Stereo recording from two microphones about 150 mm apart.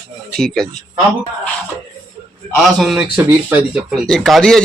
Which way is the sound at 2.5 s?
Centre (ahead or behind).